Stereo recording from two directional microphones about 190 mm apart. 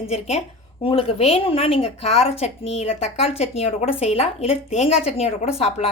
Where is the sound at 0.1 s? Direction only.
35° left (ahead or behind).